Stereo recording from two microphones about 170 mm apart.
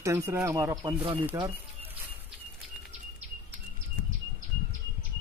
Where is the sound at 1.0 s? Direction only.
30° right (ahead or behind).